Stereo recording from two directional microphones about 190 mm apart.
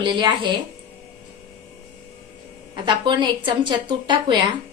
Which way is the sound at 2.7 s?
25° right (ahead or behind).